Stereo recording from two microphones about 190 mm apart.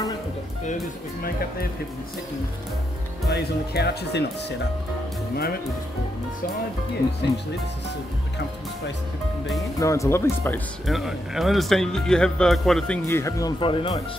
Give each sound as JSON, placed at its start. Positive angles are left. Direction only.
{"t": 3.3, "sound": "speech", "side_deg": 60}
{"t": 9.8, "sound": "speech", "side_deg": 15}
{"t": 10.9, "sound": "speech", "side_deg": 0}
{"t": 13.6, "sound": "speech", "side_deg": 25}